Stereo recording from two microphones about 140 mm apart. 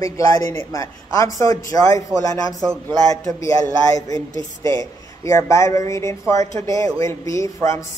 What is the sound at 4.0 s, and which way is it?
Speech, 25° left (ahead or behind).